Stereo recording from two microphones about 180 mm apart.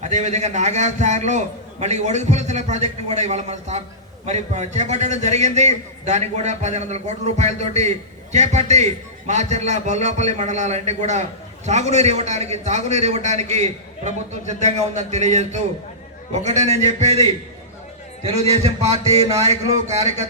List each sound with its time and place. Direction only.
0.0 s a man's voice: 40° right (ahead or behind)
18.2 s a man's voice: 35° right (ahead or behind)